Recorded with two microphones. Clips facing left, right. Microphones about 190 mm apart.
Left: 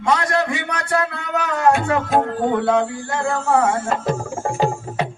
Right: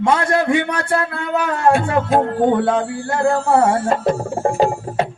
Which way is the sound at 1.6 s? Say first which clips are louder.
Right 1 dB; 30° right (ahead or behind).